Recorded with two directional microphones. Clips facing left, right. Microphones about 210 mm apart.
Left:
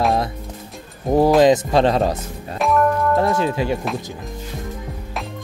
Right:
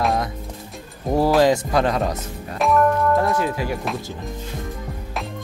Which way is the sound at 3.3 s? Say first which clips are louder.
Left 3 dB; 25° left (ahead or behind).